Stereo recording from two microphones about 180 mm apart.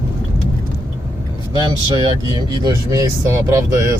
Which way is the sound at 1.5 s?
25° right (ahead or behind).